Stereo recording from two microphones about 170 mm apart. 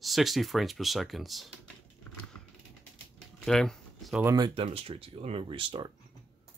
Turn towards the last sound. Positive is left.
turn(degrees=-30)  # may be behind; listen again after turning